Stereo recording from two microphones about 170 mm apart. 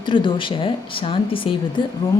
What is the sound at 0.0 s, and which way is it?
Speech, 30° left (ahead or behind).